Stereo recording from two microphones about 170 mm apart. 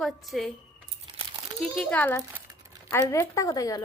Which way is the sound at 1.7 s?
5° left (ahead or behind).